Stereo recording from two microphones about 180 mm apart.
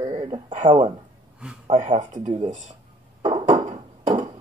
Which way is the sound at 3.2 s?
35° right (ahead or behind).